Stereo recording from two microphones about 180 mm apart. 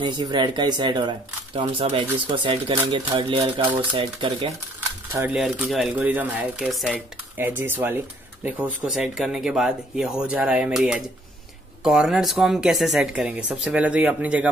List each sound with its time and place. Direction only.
0.0 s speech: 25° right (ahead or behind)
4.7 s speech: 10° right (ahead or behind)
7.3 s speech: 10° right (ahead or behind)